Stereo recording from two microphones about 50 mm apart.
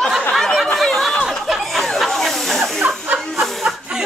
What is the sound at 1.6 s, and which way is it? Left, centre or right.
Snake, centre.